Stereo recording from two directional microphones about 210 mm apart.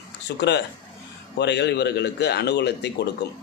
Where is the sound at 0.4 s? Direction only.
55° left (ahead or behind).